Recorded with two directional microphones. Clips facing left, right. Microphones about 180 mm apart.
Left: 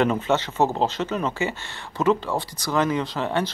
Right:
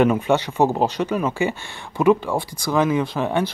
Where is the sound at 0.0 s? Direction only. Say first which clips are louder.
Right 4 dB; 15° right (ahead or behind).